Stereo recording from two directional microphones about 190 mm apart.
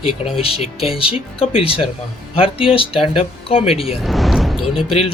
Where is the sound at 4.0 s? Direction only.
Centre (ahead or behind).